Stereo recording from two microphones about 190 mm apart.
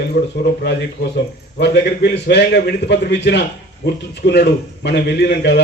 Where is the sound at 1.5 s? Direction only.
60° left (ahead or behind).